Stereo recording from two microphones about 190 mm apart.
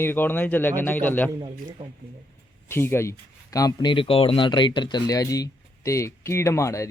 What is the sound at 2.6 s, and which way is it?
Speech, 15° left (ahead or behind).